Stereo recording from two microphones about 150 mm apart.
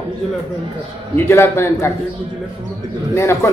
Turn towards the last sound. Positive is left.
turn(degrees=20)  # may be behind; listen again after turning